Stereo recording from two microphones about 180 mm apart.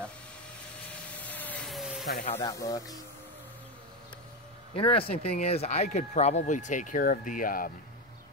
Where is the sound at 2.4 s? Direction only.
20° left (ahead or behind).